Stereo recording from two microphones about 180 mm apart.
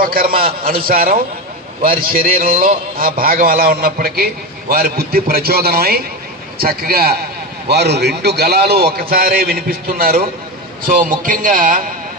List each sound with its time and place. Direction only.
0.0 s a man's voice: 55° right (ahead or behind)